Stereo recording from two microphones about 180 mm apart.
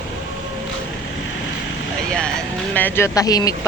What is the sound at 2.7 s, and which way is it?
Speech, 10° left (ahead or behind).